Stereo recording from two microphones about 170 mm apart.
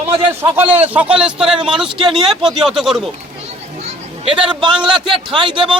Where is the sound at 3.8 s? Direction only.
35° right (ahead or behind).